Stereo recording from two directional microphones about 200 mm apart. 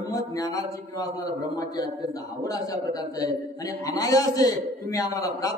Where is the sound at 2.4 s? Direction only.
20° left (ahead or behind).